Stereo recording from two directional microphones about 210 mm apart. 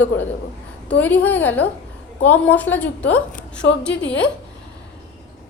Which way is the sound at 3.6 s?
55° left (ahead or behind).